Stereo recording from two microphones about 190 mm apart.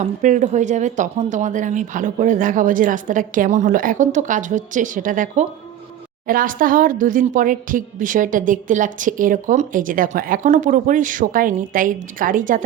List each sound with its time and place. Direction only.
0.0 s speech: 40° right (ahead or behind)